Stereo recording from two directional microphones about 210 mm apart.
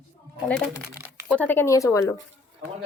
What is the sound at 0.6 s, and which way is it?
Speech, centre (ahead or behind).